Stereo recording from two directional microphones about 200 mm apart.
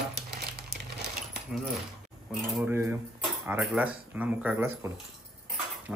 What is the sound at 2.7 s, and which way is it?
Speech, 10° right (ahead or behind).